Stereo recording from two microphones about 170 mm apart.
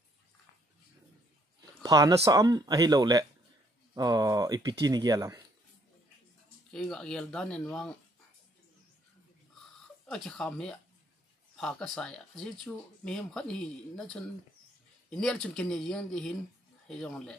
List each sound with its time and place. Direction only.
1.6 s speech: 20° right (ahead or behind)
6.7 s speech: centre (ahead or behind)
10.0 s speech: 5° left (ahead or behind)